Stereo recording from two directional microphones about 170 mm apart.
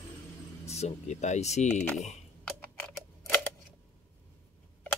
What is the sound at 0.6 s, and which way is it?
Speech, 40° left (ahead or behind).